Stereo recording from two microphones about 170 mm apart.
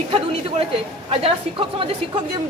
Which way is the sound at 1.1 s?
35° right (ahead or behind).